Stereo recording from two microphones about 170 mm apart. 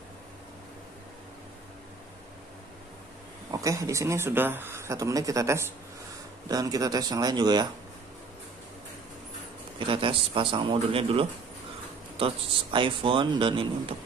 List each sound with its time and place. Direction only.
3.5 s speech: 20° right (ahead or behind)
9.8 s a man's voice: 30° right (ahead or behind)